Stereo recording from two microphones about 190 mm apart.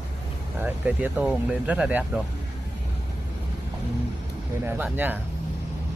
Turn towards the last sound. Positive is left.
turn(degrees=-10)  # may be behind; listen again after turning